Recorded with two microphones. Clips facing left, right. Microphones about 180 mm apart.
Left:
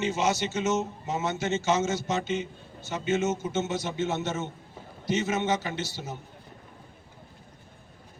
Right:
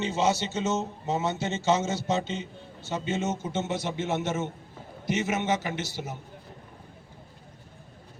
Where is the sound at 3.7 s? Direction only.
15° right (ahead or behind).